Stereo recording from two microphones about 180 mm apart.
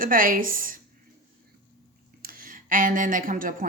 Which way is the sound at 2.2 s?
50° right (ahead or behind).